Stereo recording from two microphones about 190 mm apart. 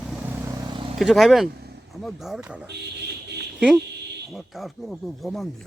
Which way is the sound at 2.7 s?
60° right (ahead or behind).